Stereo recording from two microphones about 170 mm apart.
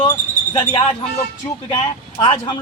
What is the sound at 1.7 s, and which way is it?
Speech, 25° left (ahead or behind).